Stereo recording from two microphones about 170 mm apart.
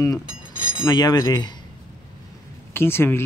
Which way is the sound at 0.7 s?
25° left (ahead or behind).